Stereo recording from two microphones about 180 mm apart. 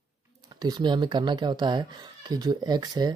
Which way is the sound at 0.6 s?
25° right (ahead or behind).